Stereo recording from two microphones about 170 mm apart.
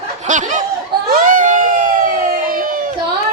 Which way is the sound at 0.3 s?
45° right (ahead or behind).